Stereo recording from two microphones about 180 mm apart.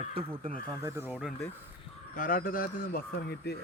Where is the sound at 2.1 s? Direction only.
50° left (ahead or behind).